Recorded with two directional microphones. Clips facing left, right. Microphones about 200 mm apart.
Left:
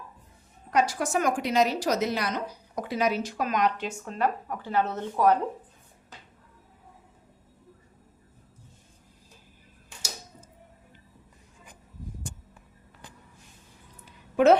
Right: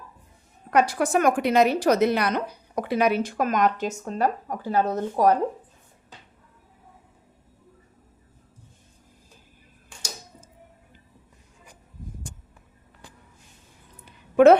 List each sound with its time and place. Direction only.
0.7 s a woman's voice: 60° right (ahead or behind); by 5.4 s 40° right (ahead or behind)